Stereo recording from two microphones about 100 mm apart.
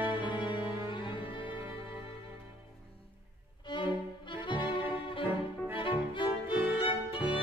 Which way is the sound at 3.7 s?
50° left (ahead or behind).